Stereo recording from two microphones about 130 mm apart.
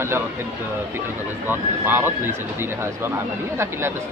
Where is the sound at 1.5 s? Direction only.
15° right (ahead or behind).